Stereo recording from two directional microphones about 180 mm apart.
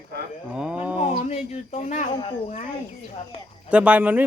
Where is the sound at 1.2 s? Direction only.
40° left (ahead or behind).